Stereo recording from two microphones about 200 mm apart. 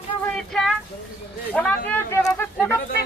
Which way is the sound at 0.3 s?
5° left (ahead or behind).